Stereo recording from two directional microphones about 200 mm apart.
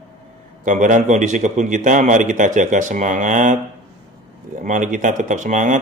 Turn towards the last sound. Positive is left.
turn(degrees=-35)  # may be behind; listen again after turning